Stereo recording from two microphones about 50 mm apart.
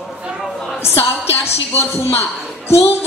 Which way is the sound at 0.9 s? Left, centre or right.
Left.